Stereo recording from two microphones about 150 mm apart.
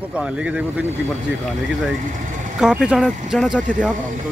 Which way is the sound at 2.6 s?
5° right (ahead or behind).